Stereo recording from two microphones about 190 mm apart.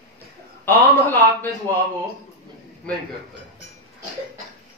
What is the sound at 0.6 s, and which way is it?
Speech, 10° left (ahead or behind).